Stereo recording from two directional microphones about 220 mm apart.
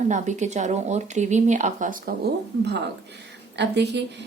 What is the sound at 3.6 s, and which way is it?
Speech, 50° right (ahead or behind).